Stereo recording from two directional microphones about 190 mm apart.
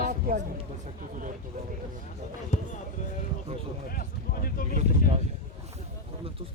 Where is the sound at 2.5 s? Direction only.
35° left (ahead or behind).